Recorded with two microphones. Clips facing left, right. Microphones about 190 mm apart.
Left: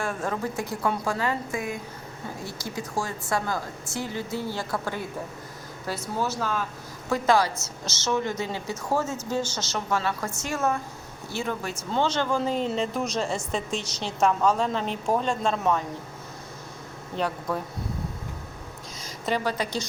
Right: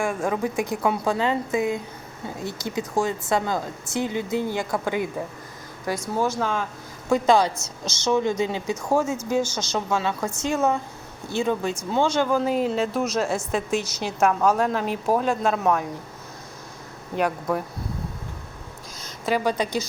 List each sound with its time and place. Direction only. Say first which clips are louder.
0.0 s a woman's voice: right 4 dB; 10° right (ahead or behind)
17.2 s a woman's voice: right 4 dB; 10° right (ahead or behind)
19.5 s a woman's voice: right 4 dB; 15° right (ahead or behind)